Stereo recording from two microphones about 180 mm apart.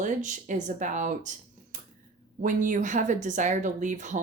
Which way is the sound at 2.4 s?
45° right (ahead or behind).